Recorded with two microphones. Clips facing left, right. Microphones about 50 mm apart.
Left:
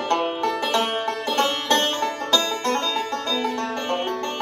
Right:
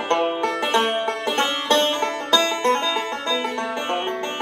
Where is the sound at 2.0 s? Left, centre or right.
Right.